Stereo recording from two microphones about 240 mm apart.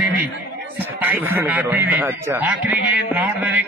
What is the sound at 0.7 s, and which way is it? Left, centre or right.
A man's voice, centre.